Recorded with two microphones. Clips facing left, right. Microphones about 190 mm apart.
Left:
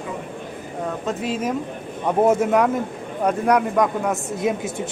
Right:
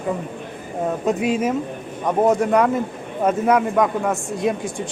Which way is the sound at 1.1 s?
10° right (ahead or behind).